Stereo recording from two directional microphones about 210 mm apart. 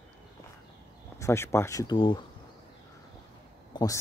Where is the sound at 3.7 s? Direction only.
20° left (ahead or behind).